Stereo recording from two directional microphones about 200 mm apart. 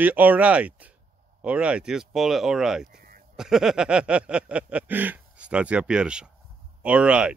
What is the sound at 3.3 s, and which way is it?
Speech, 5° right (ahead or behind).